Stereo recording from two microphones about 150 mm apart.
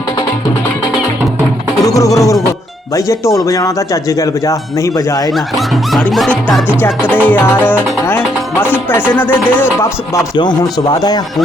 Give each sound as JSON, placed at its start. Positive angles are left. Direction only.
{"t": 1.8, "sound": "music", "side_deg": 20}
{"t": 2.5, "sound": "speech", "side_deg": 20}
{"t": 5.3, "sound": "speech", "side_deg": 0}
{"t": 6.7, "sound": "music", "side_deg": 15}
{"t": 10.3, "sound": "speech", "side_deg": 30}